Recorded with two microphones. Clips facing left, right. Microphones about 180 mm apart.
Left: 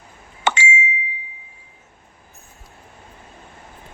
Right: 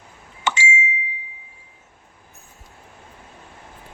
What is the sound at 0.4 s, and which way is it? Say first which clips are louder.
Ding: left 3 dB; 65° left (ahead or behind).